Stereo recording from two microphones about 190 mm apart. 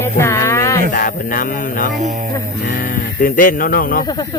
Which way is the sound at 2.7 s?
45° left (ahead or behind).